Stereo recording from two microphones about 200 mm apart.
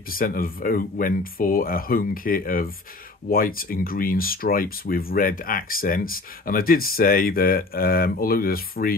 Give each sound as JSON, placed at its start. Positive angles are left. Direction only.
{"t": 0.2, "sound": "speech", "side_deg": 45}